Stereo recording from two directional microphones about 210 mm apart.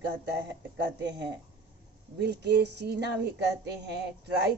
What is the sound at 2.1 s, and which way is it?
A woman's voice, 55° right (ahead or behind).